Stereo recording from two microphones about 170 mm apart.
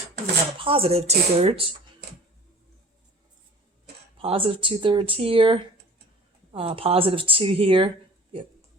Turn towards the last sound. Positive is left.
turn(degrees=-30)  # may be behind; listen again after turning